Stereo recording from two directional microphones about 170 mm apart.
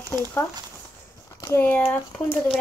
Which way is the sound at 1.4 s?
15° left (ahead or behind).